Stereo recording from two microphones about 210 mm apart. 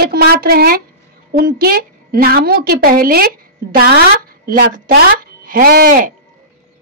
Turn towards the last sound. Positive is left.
turn(degrees=-45)  # may be behind; listen again after turning